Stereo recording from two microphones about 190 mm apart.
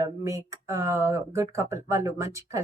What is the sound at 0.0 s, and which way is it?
Speech, 15° right (ahead or behind).